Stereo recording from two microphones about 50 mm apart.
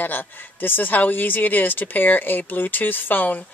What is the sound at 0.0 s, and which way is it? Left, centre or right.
Speech, left.